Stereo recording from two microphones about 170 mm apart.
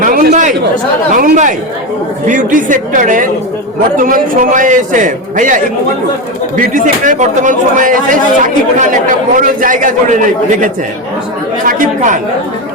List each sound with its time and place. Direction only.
0.0 s chatter: 50° right (ahead or behind)
1.1 s speech: 50° right (ahead or behind)
6.6 s speech: 50° right (ahead or behind)